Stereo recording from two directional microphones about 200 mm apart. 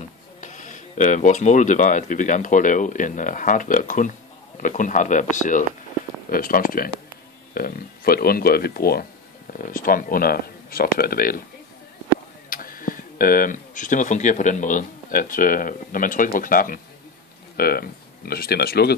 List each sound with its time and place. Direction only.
0.4 s speech: 40° left (ahead or behind)
12.4 s speech: 45° left (ahead or behind)